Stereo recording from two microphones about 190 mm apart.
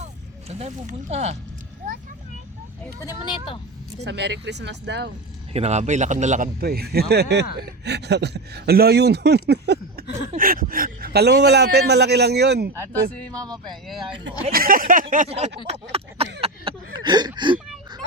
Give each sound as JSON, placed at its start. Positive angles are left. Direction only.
{"t": 0.0, "sound": "speech", "side_deg": -35}
{"t": 3.0, "sound": "speech", "side_deg": 20}
{"t": 4.0, "sound": "speech", "side_deg": -65}
{"t": 5.5, "sound": "a sound", "side_deg": -35}
{"t": 6.6, "sound": "speech", "side_deg": -55}
{"t": 10.3, "sound": "speech", "side_deg": -45}
{"t": 12.7, "sound": "speech", "side_deg": 10}
{"t": 13.3, "sound": "speech", "side_deg": -20}
{"t": 13.8, "sound": "speech", "side_deg": 0}
{"t": 14.5, "sound": "speech", "side_deg": -50}
{"t": 15.1, "sound": "a sound", "side_deg": -40}